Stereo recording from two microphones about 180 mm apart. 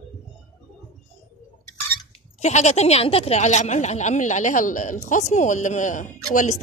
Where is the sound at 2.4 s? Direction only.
40° left (ahead or behind).